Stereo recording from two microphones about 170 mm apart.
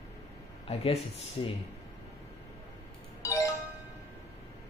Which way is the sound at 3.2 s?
20° left (ahead or behind).